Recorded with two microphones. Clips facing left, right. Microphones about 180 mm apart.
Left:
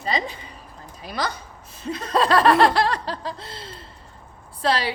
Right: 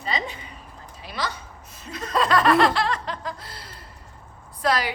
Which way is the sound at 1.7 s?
30° left (ahead or behind).